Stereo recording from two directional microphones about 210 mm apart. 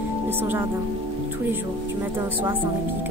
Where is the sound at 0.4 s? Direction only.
10° right (ahead or behind).